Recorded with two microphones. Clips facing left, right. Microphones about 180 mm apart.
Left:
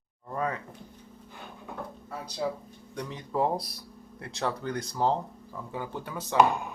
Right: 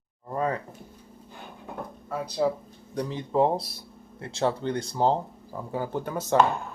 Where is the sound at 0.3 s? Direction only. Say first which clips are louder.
Right 4 dB; 30° right (ahead or behind).